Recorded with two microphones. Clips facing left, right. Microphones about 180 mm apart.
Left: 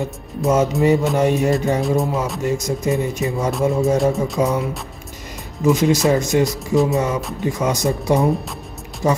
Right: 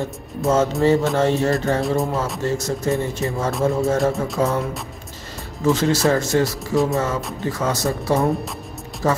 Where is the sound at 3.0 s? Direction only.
15° left (ahead or behind).